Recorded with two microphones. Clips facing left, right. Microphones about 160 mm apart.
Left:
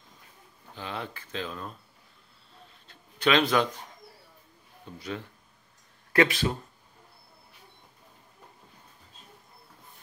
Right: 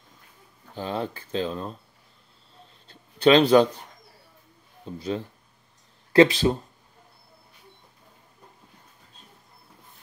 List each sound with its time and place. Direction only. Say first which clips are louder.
0.7 s speech: right 7 dB; 35° right (ahead or behind)
2.9 s a sound: right 7 dB; 35° right (ahead or behind)
4.8 s speech: right 7 dB; 30° right (ahead or behind)